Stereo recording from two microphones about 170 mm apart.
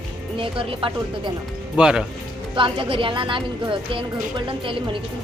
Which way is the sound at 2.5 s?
30° right (ahead or behind).